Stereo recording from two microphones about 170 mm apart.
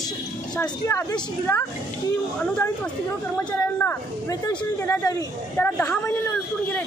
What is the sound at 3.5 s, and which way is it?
Speech, 20° left (ahead or behind).